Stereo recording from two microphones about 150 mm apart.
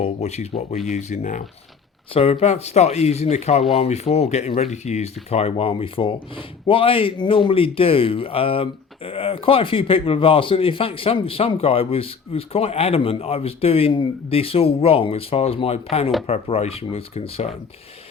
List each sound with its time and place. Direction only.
0.0 s speech: 45° left (ahead or behind)
2.1 s speech: 40° left (ahead or behind)